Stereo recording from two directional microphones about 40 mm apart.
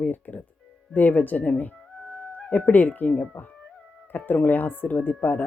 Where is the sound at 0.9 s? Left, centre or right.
Left.